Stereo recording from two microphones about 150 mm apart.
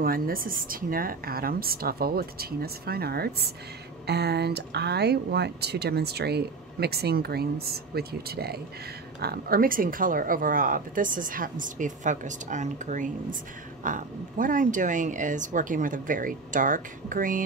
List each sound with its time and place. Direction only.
0.0 s speech: 75° right (ahead or behind)